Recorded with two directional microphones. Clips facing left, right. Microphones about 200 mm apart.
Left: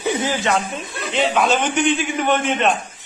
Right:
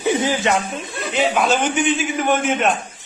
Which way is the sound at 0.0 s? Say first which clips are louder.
Right 2 dB; 15° right (ahead or behind).